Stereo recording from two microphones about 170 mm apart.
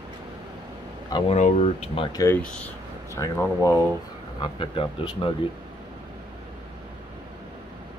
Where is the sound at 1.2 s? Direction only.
40° left (ahead or behind).